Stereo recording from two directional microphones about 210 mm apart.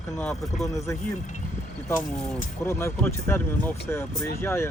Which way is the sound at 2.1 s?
5° left (ahead or behind).